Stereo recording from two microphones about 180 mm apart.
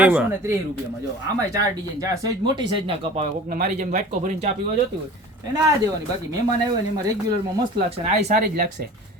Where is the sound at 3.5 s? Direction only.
50° right (ahead or behind).